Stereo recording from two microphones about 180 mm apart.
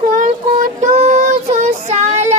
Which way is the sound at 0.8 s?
40° right (ahead or behind).